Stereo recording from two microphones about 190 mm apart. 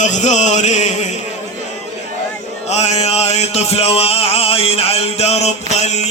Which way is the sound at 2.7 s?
35° left (ahead or behind).